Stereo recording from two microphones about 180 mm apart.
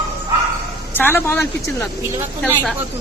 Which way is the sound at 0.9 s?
10° left (ahead or behind).